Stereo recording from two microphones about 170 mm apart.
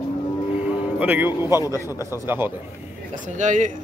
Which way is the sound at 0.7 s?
10° right (ahead or behind).